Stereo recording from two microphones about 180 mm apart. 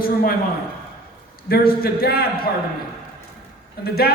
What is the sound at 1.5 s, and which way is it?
Speech, 55° left (ahead or behind).